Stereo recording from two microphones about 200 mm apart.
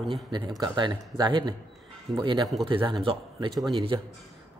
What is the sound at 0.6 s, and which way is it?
Speech, 20° right (ahead or behind).